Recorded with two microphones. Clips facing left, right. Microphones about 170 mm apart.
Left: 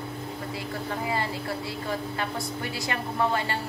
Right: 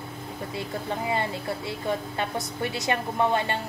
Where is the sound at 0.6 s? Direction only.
25° right (ahead or behind).